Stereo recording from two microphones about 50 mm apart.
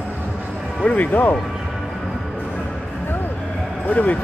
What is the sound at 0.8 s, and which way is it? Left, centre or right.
Speech, left.